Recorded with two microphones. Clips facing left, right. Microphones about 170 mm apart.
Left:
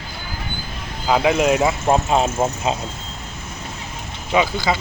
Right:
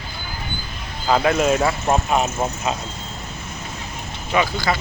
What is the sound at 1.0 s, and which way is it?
Speech, 10° left (ahead or behind).